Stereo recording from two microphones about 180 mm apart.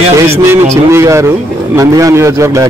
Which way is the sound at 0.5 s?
15° right (ahead or behind).